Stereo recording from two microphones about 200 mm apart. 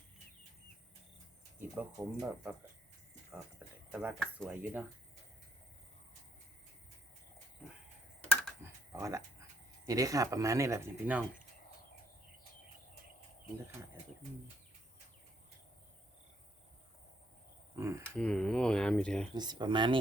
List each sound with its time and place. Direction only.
1.5 s speech: 10° right (ahead or behind)
3.6 s a sound: 5° right (ahead or behind)
4.2 s speech: centre (ahead or behind)
8.9 s speech: 15° right (ahead or behind)
17.7 s cricket: 15° right (ahead or behind)
18.0 s a sound: 5° left (ahead or behind)
19.3 s speech: 20° right (ahead or behind)